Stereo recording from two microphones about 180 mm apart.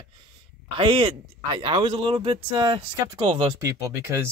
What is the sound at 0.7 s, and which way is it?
Speech, 25° right (ahead or behind).